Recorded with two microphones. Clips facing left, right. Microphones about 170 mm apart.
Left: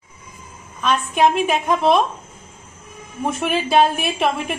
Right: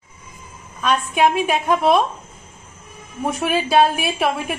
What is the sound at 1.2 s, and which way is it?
Speech, 5° right (ahead or behind).